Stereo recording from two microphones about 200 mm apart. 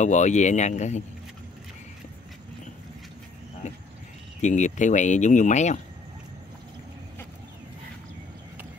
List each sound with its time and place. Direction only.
0.0 s speech: 35° left (ahead or behind)
3.6 s speech: 35° left (ahead or behind)